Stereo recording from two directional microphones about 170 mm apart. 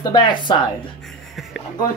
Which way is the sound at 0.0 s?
25° left (ahead or behind).